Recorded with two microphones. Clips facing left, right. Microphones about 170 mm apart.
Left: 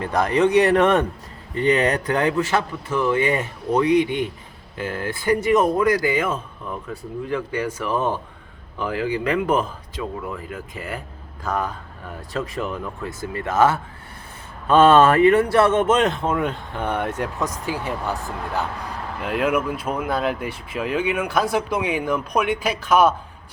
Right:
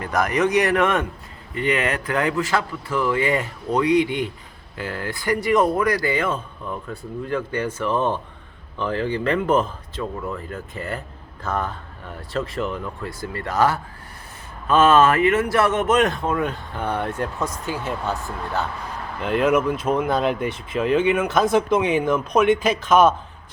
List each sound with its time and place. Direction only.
0.0 s speech: 30° left (ahead or behind)
6.1 s speech: 5° left (ahead or behind); by 13.7 s 25° left (ahead or behind)
14.7 s speech: 35° left (ahead or behind); by 23.1 s 10° left (ahead or behind)